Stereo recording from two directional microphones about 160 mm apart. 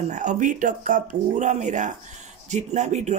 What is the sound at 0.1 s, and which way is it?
A man's voice, 50° right (ahead or behind).